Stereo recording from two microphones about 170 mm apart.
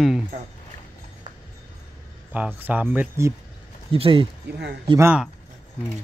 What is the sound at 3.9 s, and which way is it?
Speech, 30° right (ahead or behind).